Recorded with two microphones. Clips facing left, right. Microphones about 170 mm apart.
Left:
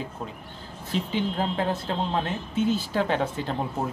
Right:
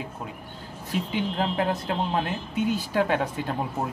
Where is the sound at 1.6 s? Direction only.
10° right (ahead or behind).